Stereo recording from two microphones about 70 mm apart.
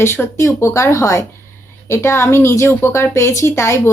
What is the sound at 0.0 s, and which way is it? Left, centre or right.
Speech, left.